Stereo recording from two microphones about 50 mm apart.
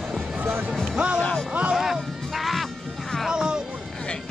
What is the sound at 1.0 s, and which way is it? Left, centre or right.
Speech, right.